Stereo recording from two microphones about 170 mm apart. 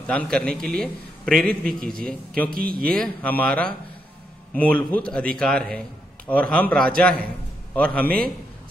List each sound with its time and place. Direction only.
0.0 s a man's voice: 5° left (ahead or behind)
2.5 s speech: 60° right (ahead or behind)
2.9 s a man's voice: 5° left (ahead or behind)